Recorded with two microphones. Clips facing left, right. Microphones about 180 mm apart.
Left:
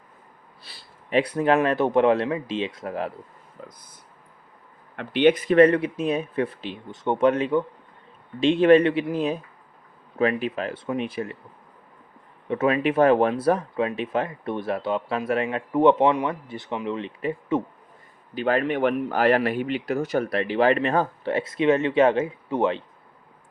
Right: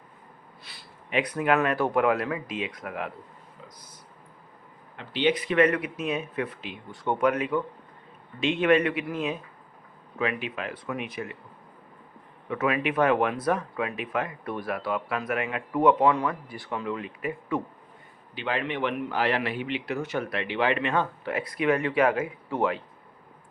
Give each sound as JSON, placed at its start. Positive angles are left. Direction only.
{"t": 0.6, "sound": "speech", "side_deg": 30}
{"t": 3.6, "sound": "speech", "side_deg": 50}
{"t": 4.9, "sound": "a man's voice", "side_deg": 55}
{"t": 6.9, "sound": "a man's voice", "side_deg": 20}
{"t": 12.5, "sound": "speech", "side_deg": 30}
{"t": 18.3, "sound": "a man's voice", "side_deg": 45}